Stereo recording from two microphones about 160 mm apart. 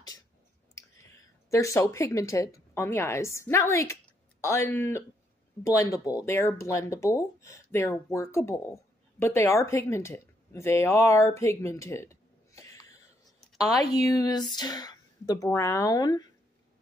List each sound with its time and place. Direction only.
1.5 s a woman's voice: 20° left (ahead or behind)
14.1 s speech: 25° left (ahead or behind)